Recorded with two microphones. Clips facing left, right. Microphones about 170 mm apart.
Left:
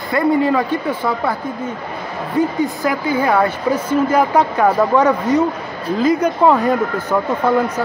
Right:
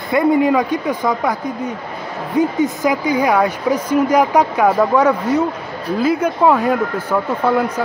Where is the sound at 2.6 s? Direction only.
15° right (ahead or behind).